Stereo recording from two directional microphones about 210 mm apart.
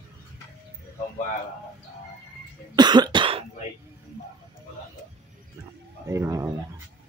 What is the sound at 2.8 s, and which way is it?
Cough, 20° right (ahead or behind).